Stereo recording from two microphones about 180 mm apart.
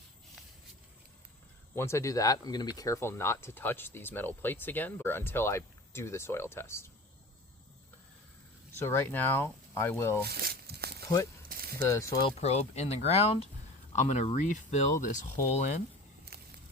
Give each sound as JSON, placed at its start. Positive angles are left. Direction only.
{"t": 1.7, "sound": "speech", "side_deg": 15}
{"t": 8.7, "sound": "speech", "side_deg": 15}
{"t": 10.2, "sound": "crumpling", "side_deg": -60}
{"t": 11.4, "sound": "a sound", "side_deg": -55}
{"t": 11.9, "sound": "speech", "side_deg": 15}
{"t": 12.4, "sound": "speech", "side_deg": 35}